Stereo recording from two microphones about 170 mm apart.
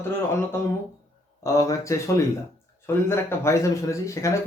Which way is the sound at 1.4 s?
20° left (ahead or behind).